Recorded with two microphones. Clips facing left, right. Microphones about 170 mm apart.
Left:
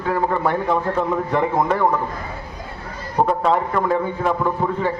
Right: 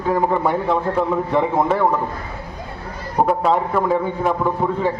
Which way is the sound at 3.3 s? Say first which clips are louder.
Right 2 dB; 5° right (ahead or behind).